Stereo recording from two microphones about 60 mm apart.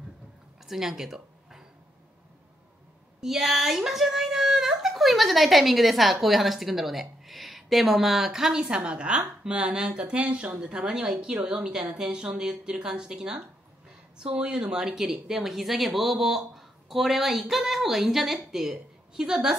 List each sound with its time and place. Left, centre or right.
0.7 s speech: centre
3.2 s a woman's voice: centre